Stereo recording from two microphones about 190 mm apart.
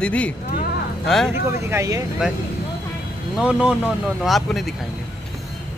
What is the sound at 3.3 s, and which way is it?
Speech, 5° right (ahead or behind).